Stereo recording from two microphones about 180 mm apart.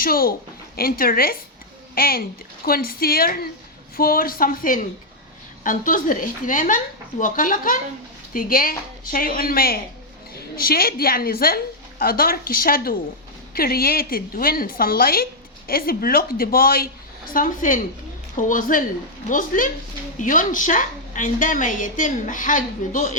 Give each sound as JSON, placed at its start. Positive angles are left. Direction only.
{"t": 0.0, "sound": "a woman's voice", "side_deg": 55}